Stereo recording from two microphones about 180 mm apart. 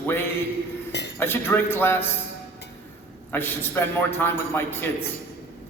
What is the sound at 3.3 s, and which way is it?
A man's voice, 10° left (ahead or behind).